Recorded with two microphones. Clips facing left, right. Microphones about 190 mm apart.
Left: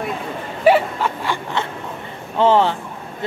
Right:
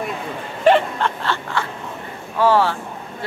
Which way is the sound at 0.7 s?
5° left (ahead or behind).